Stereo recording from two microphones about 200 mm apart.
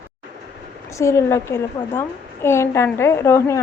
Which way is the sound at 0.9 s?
15° left (ahead or behind).